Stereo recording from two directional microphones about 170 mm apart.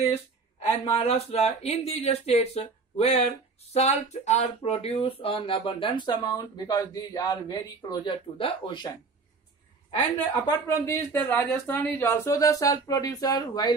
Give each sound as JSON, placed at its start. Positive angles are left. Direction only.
{"t": 0.9, "sound": "speech", "side_deg": 35}
{"t": 10.4, "sound": "speech", "side_deg": 15}